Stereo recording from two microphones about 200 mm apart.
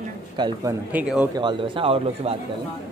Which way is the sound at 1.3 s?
25° right (ahead or behind).